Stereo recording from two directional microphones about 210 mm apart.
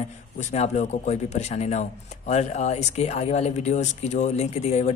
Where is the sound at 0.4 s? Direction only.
35° left (ahead or behind).